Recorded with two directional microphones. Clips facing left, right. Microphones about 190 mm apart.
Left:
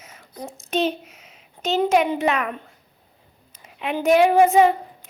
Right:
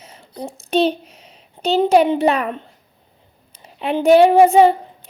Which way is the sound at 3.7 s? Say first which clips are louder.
Right 5 dB; 30° right (ahead or behind).